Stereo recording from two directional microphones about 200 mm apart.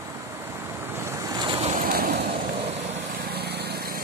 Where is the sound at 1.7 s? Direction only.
45° right (ahead or behind).